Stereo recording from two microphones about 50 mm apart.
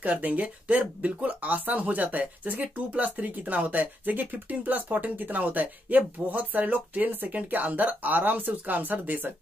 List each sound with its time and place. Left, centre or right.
0.0 s speech: right